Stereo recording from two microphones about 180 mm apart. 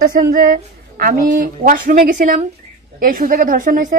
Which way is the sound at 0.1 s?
50° right (ahead or behind).